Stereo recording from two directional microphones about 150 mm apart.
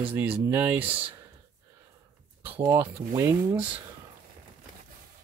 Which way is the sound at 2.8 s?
15° right (ahead or behind).